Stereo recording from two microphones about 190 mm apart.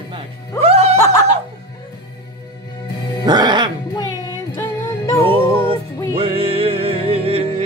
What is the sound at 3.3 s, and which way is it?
Music, 25° right (ahead or behind).